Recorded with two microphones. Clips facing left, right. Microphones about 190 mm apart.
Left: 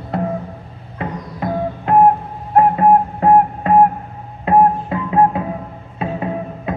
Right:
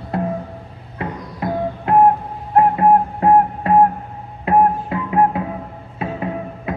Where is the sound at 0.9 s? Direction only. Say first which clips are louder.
Left 1 dB; 25° left (ahead or behind).